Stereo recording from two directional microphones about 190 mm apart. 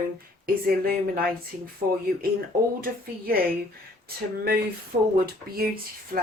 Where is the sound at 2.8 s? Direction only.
50° right (ahead or behind).